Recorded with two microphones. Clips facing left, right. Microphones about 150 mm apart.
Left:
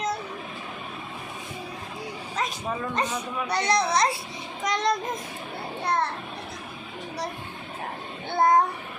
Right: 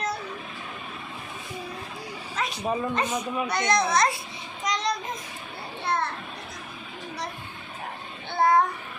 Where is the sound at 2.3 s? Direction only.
40° left (ahead or behind).